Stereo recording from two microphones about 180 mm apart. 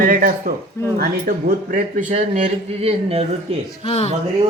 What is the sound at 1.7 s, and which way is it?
A man's voice, 45° right (ahead or behind).